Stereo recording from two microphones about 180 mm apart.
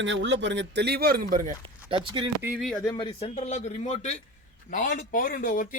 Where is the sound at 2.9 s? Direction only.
30° left (ahead or behind).